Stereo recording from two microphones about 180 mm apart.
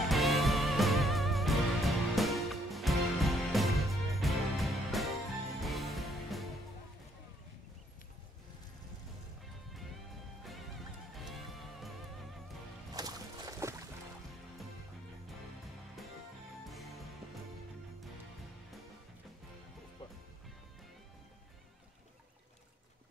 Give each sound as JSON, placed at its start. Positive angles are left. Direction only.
{"t": 0.0, "sound": "music", "side_deg": 0}
{"t": 10.4, "sound": "music", "side_deg": 0}
{"t": 12.9, "sound": "music", "side_deg": -20}
{"t": 16.6, "sound": "music", "side_deg": 0}